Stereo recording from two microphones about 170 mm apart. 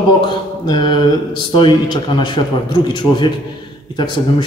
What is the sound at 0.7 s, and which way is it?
Speech, 25° left (ahead or behind).